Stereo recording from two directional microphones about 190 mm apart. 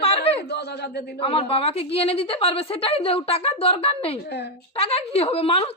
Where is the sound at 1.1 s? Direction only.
30° left (ahead or behind).